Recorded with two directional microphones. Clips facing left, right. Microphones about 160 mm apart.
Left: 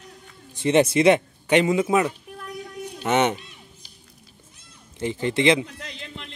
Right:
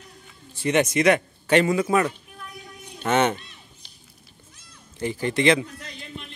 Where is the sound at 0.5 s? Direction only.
25° left (ahead or behind).